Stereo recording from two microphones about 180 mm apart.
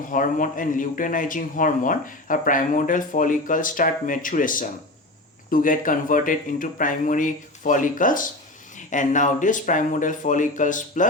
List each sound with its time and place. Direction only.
0.1 s a man's voice: 45° left (ahead or behind)